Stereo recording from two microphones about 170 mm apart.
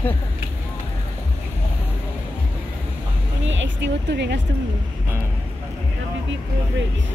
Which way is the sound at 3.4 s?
90° right.